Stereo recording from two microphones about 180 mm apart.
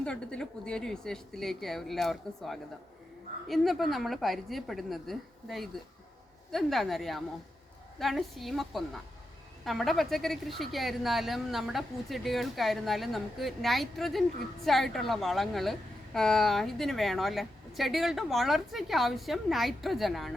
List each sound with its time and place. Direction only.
0.0 s a woman's voice: 5° left (ahead or behind)